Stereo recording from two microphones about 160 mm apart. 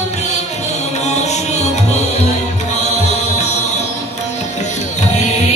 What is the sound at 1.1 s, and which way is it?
Music, 45° left (ahead or behind).